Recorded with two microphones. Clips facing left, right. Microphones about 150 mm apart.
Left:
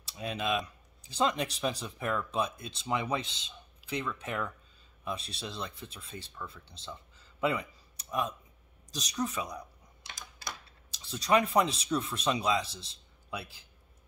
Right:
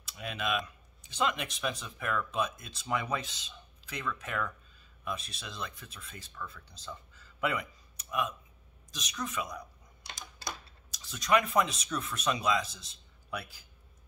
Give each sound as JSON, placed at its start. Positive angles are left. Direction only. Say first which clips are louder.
{"t": 0.2, "sound": "speech", "louder": "left 2 dB", "side_deg": 30}
{"t": 10.9, "sound": "speech", "louder": "left 1 dB", "side_deg": 30}